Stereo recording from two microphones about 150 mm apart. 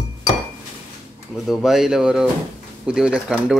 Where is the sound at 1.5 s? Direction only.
Centre (ahead or behind).